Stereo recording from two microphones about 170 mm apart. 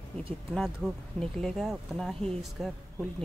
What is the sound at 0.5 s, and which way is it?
Speech, centre (ahead or behind).